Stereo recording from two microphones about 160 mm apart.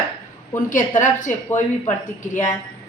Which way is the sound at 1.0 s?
50° left (ahead or behind).